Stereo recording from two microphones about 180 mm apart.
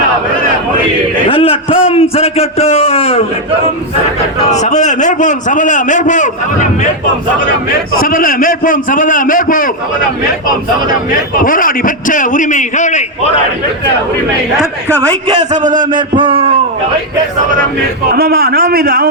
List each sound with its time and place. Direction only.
1.3 s a man's voice: 30° left (ahead or behind)
4.4 s a man's voice: 40° left (ahead or behind)
8.0 s a man's voice: 50° left (ahead or behind)
11.4 s a man's voice: 50° left (ahead or behind)
15.4 s a sound: 45° right (ahead or behind)
15.8 s a man's voice: 25° right (ahead or behind)
18.1 s a man's voice: 55° right (ahead or behind)